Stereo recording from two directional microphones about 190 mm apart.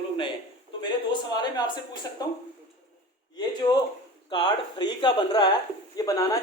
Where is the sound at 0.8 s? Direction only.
20° left (ahead or behind).